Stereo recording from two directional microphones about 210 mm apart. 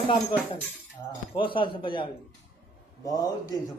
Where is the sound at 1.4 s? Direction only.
25° left (ahead or behind).